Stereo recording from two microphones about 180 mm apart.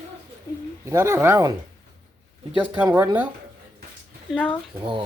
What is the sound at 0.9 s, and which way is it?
Speech, 15° right (ahead or behind).